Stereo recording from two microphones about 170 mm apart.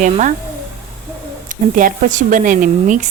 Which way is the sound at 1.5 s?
50° right (ahead or behind).